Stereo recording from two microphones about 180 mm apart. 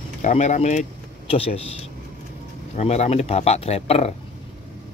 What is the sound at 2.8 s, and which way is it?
Speech, 35° left (ahead or behind).